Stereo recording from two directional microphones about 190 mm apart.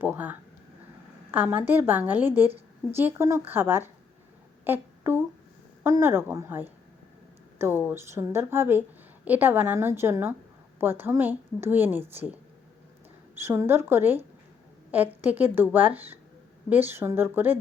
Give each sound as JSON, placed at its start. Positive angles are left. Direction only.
{"t": 0.0, "sound": "a woman's voice", "side_deg": -10}
{"t": 13.4, "sound": "a woman's voice", "side_deg": -15}